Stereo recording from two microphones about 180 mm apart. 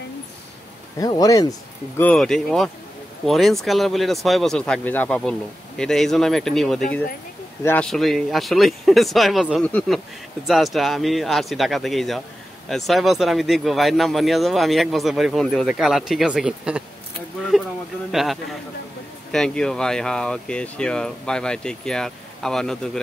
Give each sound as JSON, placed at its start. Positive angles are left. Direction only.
{"t": 0.9, "sound": "speech", "side_deg": 20}
{"t": 2.0, "sound": "speech", "side_deg": 5}